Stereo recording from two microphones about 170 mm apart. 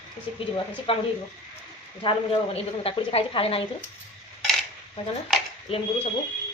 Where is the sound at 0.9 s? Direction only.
35° left (ahead or behind).